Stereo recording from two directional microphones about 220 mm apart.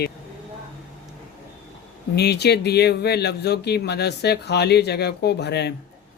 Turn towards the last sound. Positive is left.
turn(degrees=50)  # may be behind; listen again after turning